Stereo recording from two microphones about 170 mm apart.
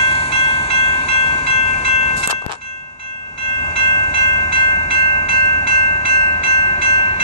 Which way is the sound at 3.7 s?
30° left (ahead or behind).